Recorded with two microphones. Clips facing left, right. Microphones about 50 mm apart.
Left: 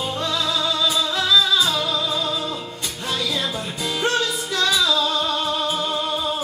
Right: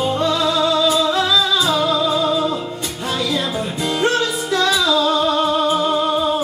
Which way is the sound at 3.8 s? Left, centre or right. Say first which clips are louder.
Right 4 dB; centre.